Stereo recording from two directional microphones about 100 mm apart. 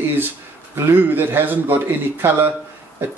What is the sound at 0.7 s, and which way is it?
Speech, 20° right (ahead or behind).